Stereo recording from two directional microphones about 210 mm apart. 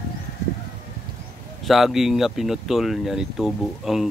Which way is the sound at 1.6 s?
Centre (ahead or behind).